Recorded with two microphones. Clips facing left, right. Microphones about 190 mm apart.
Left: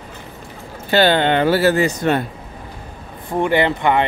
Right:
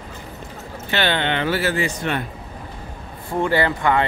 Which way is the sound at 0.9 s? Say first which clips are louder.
Left 7 dB; 40° left (ahead or behind).